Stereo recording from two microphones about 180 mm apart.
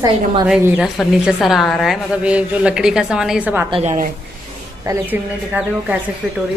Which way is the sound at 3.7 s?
35° right (ahead or behind).